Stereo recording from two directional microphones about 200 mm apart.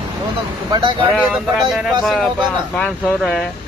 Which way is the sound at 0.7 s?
20° right (ahead or behind).